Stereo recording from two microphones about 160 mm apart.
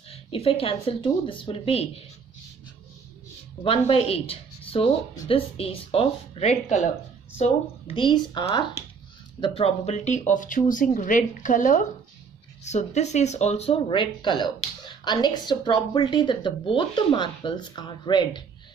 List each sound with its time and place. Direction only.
0.1 s speech: 35° left (ahead or behind)
3.6 s a woman's voice: 35° left (ahead or behind)
7.9 s speech: 30° left (ahead or behind)